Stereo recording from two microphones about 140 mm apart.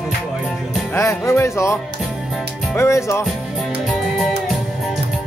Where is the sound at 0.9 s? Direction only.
20° left (ahead or behind).